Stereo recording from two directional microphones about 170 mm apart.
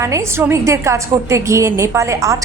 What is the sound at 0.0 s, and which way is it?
A woman's voice, 15° right (ahead or behind).